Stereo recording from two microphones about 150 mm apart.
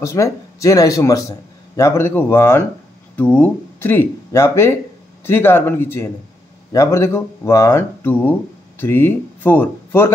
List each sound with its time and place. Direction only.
0.0 s speech: 20° left (ahead or behind)